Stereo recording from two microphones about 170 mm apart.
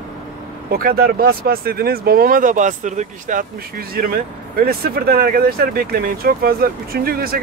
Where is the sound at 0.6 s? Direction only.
60° right (ahead or behind).